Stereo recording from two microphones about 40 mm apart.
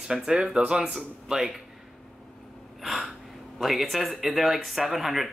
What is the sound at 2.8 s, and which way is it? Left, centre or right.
Speech, centre.